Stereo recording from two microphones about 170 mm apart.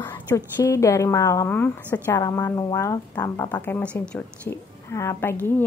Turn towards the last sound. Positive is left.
turn(degrees=10)  # may be behind; listen again after turning